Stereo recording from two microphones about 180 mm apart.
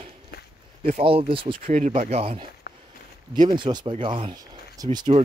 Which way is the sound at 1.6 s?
40° right (ahead or behind).